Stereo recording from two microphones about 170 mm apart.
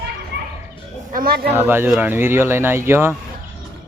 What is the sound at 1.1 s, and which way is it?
Speech, 60° right (ahead or behind).